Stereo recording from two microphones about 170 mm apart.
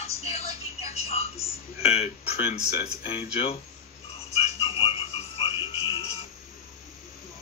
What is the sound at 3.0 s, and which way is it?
Speech, 35° left (ahead or behind).